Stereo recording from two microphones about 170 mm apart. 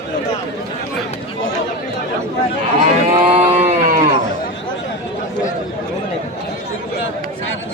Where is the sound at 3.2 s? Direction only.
35° right (ahead or behind).